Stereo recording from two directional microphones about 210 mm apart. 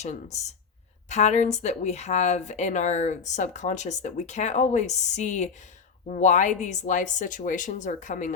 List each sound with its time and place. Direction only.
0.0 s speech: 30° left (ahead or behind)